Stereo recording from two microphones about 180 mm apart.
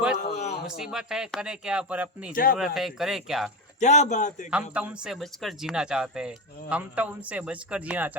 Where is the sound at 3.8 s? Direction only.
40° left (ahead or behind).